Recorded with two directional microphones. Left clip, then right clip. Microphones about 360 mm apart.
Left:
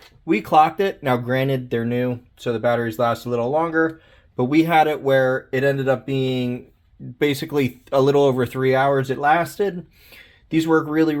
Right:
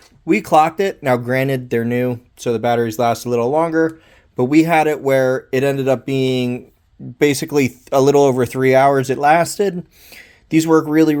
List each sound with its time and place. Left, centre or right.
0.3 s speech: right